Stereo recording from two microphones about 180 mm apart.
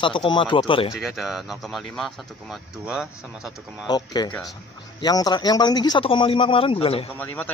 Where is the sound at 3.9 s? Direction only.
25° left (ahead or behind).